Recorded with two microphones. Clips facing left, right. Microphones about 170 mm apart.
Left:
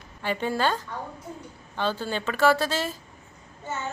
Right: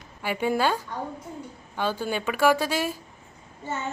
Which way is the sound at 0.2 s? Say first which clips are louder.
Right 2 dB; 10° right (ahead or behind).